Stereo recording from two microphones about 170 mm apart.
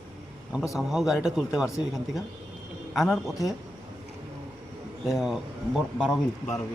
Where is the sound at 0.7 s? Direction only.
Centre (ahead or behind).